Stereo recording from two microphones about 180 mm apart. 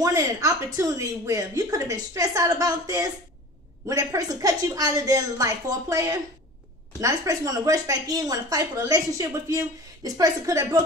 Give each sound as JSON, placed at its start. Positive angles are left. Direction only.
{"t": 0.0, "sound": "a woman's voice", "side_deg": -20}